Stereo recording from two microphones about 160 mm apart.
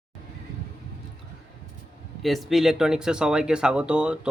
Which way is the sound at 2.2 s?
Centre (ahead or behind).